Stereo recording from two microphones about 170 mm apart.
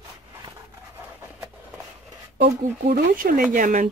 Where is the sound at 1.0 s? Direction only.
15° right (ahead or behind).